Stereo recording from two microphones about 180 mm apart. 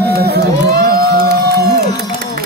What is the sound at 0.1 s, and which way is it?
Music, 60° right (ahead or behind).